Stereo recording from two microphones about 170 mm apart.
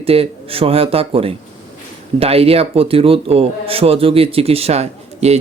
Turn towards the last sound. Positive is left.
turn(degrees=-40)  # may be behind; listen again after turning